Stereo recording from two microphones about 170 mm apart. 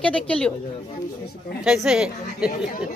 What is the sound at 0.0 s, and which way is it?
Speech, 5° left (ahead or behind).